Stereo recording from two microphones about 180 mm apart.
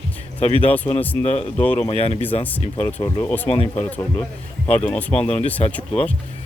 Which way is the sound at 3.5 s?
35° left (ahead or behind).